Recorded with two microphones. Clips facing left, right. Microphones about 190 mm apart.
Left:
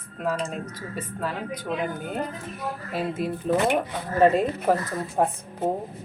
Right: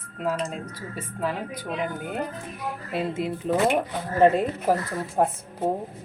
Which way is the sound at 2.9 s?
25° right (ahead or behind).